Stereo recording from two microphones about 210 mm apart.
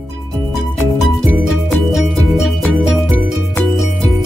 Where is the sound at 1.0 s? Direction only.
Centre (ahead or behind).